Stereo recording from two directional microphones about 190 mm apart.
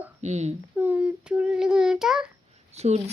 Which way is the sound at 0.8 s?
10° right (ahead or behind).